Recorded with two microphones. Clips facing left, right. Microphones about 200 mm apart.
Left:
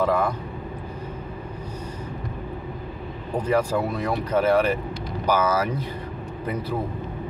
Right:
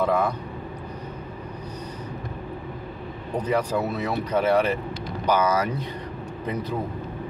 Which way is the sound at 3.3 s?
10° left (ahead or behind).